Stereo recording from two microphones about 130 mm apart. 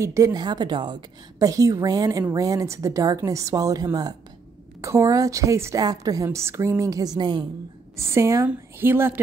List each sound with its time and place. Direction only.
0.0 s a woman's voice: 25° right (ahead or behind)
8.0 s a woman's voice: 20° right (ahead or behind)